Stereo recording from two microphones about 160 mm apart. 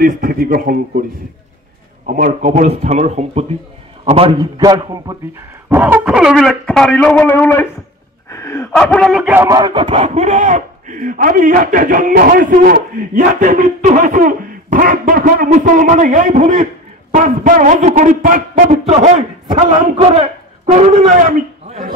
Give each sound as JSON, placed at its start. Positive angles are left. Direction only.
{"t": 0.0, "sound": "speech", "side_deg": -65}
{"t": 2.0, "sound": "a man's voice", "side_deg": -55}
{"t": 4.4, "sound": "a man's voice", "side_deg": -25}
{"t": 8.3, "sound": "a sound", "side_deg": 20}
{"t": 8.7, "sound": "speech", "side_deg": 5}
{"t": 9.5, "sound": "a man's voice", "side_deg": -30}
{"t": 19.4, "sound": "a man's voice", "side_deg": -30}
{"t": 20.7, "sound": "a man's voice", "side_deg": -45}